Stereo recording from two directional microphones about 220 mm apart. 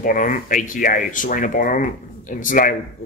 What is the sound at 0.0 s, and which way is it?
Speech, 40° left (ahead or behind).